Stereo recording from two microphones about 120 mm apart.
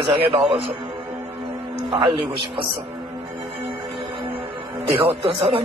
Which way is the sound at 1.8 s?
45° right (ahead or behind).